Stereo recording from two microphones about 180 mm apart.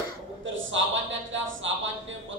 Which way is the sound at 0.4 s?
90° right.